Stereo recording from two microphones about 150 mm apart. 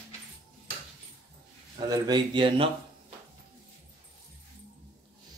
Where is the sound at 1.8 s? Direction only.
30° right (ahead or behind).